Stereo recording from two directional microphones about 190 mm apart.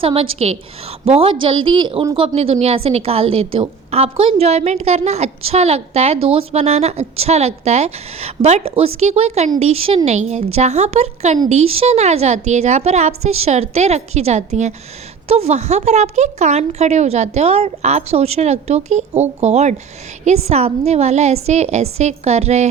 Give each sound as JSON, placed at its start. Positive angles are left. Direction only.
{"t": 0.0, "sound": "a woman's voice", "side_deg": -30}